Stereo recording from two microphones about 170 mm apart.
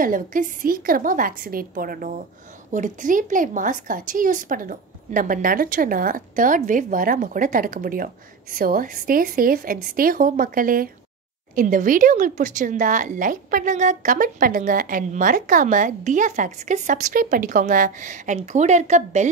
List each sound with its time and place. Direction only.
0.0 s a woman's voice: 55° right (ahead or behind)